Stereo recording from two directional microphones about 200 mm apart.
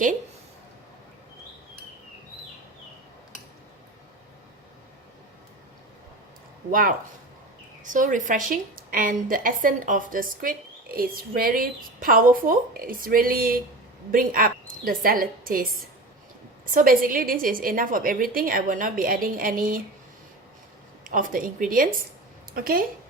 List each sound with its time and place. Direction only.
6.7 s a woman's voice: 45° right (ahead or behind)
16.7 s a woman's voice: 45° right (ahead or behind)
21.0 s a woman's voice: 40° right (ahead or behind)